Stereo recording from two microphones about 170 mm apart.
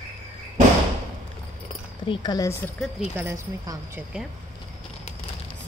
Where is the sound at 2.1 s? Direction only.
25° left (ahead or behind); by 2.9 s 5° left (ahead or behind).